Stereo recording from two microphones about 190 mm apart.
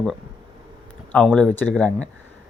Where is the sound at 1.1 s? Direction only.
5° left (ahead or behind).